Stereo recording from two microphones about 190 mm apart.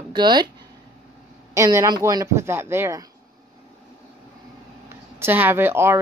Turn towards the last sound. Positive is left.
turn(degrees=-15)  # may be behind; listen again after turning